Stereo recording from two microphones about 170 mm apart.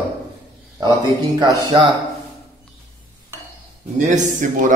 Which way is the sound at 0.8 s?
25° right (ahead or behind).